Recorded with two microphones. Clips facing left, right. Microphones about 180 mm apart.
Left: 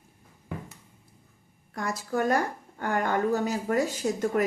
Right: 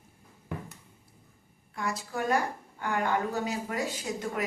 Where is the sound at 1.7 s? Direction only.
45° left (ahead or behind).